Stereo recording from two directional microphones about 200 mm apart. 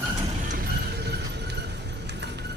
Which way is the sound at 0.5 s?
50° right (ahead or behind).